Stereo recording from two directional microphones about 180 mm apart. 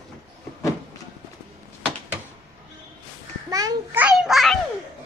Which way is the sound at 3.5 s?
20° right (ahead or behind).